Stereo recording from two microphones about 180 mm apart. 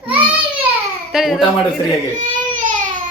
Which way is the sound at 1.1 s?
Centre (ahead or behind).